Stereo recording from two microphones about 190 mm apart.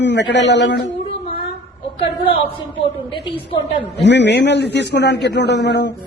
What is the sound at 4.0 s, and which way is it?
A man's voice, 65° left (ahead or behind).